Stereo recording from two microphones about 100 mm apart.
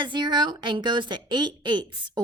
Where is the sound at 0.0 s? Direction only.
50° right (ahead or behind).